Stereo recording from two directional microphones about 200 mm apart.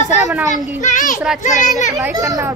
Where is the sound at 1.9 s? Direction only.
15° right (ahead or behind).